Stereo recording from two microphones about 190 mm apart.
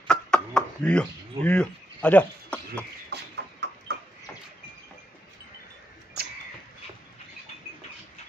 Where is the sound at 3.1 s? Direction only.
60° right (ahead or behind).